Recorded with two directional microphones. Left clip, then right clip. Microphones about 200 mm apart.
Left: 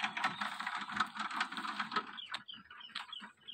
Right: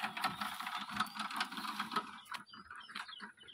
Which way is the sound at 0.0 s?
35° right (ahead or behind).